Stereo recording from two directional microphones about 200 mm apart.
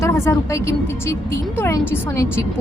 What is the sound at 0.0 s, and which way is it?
A woman's voice, 15° left (ahead or behind).